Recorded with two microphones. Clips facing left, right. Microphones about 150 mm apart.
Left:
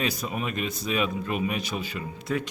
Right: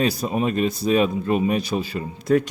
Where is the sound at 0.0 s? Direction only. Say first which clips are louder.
Right 8 dB; 35° right (ahead or behind).